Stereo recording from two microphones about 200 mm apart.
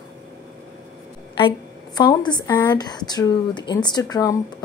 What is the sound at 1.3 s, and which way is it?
A woman's voice, 25° left (ahead or behind).